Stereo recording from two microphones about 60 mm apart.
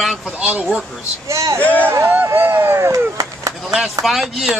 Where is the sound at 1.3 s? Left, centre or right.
Right.